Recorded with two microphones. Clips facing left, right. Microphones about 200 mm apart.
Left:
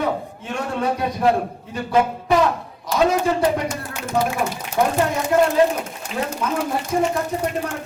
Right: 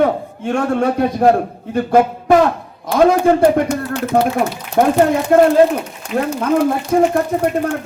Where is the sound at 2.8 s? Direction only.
55° right (ahead or behind).